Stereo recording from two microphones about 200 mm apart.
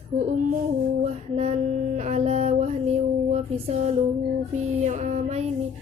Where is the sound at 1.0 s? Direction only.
35° right (ahead or behind).